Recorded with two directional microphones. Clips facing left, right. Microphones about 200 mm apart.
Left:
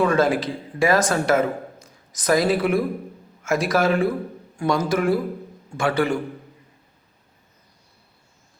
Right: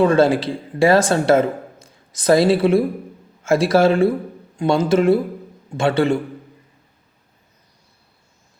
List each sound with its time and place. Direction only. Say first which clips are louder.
0.0 s speech: right 5 dB; 30° right (ahead or behind)